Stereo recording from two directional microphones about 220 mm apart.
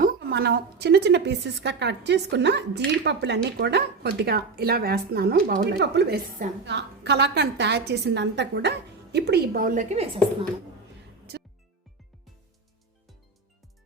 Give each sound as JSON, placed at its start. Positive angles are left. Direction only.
{"t": 0.0, "sound": "a woman's voice", "side_deg": -45}